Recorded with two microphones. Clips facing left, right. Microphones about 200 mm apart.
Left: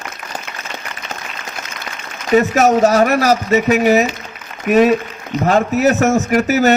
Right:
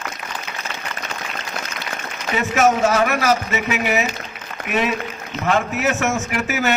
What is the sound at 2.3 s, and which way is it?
A man's voice, 40° left (ahead or behind).